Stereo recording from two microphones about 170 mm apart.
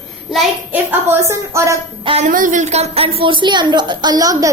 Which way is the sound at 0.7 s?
10° right (ahead or behind).